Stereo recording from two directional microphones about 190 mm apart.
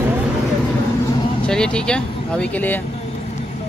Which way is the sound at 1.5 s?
5° left (ahead or behind).